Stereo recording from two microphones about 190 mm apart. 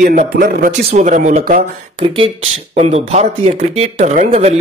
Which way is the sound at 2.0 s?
30° right (ahead or behind).